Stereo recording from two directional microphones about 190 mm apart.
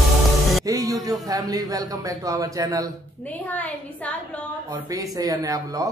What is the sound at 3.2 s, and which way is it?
A woman's voice, 10° left (ahead or behind).